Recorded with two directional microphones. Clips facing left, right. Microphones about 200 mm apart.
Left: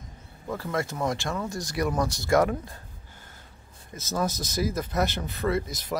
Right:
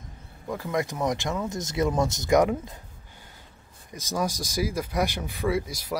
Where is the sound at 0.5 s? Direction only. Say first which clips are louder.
Right 1 dB; 15° right (ahead or behind).